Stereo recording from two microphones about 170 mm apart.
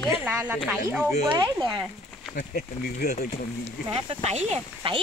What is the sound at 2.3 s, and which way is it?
Speech, 65° left (ahead or behind).